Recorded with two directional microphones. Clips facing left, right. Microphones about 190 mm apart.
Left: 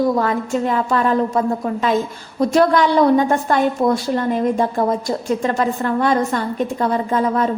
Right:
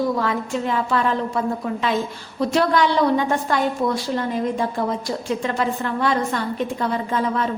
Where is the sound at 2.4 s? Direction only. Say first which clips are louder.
Left 4 dB; 45° left (ahead or behind).